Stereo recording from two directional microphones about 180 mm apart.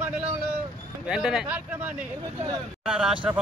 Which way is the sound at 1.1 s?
5° right (ahead or behind).